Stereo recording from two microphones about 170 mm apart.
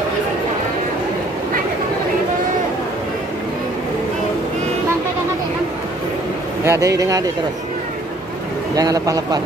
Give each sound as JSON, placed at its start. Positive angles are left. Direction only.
{"t": 6.6, "sound": "speech", "side_deg": -15}
{"t": 8.7, "sound": "speech", "side_deg": -20}